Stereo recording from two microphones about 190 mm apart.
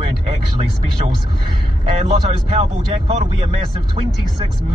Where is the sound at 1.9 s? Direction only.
30° right (ahead or behind).